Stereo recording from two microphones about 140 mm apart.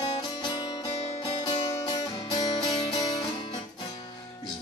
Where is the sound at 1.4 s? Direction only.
30° left (ahead or behind).